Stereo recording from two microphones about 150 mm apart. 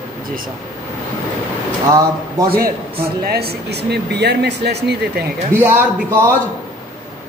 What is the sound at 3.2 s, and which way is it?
Speech, 90° right.